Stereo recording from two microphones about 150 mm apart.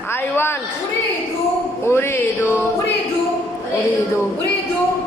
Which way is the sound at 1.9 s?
15° left (ahead or behind).